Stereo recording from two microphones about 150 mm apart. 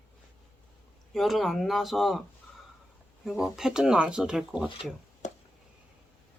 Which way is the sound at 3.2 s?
Centre (ahead or behind).